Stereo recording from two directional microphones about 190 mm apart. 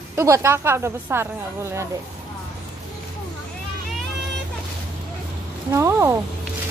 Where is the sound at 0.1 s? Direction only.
15° right (ahead or behind).